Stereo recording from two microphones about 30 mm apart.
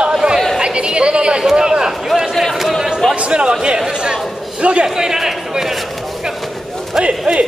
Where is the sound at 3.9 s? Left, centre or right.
Right.